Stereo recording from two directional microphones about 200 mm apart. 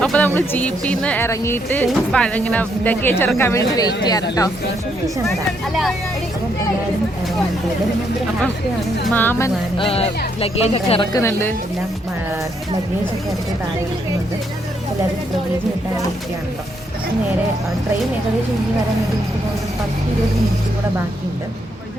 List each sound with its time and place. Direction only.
0.0 s music: 5° left (ahead or behind)
0.3 s speech: 10° left (ahead or behind)
9.0 s speech: 10° left (ahead or behind)
9.7 s speech: 30° left (ahead or behind)
11.1 s speech: 10° left (ahead or behind)